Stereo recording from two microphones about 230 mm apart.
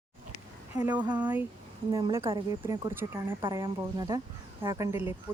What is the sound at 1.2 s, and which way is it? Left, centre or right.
Speech, centre.